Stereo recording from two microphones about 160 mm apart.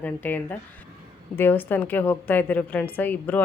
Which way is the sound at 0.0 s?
10° left (ahead or behind).